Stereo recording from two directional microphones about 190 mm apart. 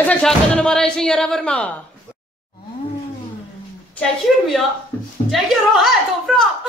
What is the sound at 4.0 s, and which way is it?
Speech, centre (ahead or behind).